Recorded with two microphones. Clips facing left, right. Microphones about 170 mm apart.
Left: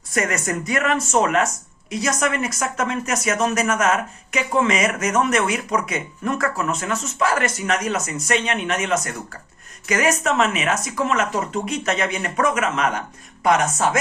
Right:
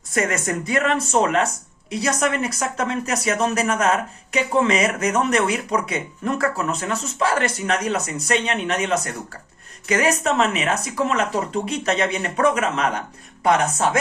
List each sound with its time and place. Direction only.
0.1 s speech: 30° right (ahead or behind)